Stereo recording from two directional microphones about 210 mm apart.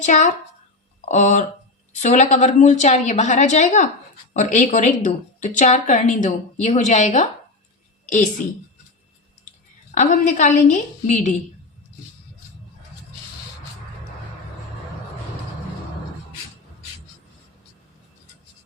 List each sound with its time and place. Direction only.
0.0 s a woman's voice: 35° left (ahead or behind)
9.9 s a woman's voice: 35° left (ahead or behind)